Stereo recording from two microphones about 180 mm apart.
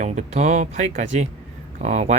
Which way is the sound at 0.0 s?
40° right (ahead or behind).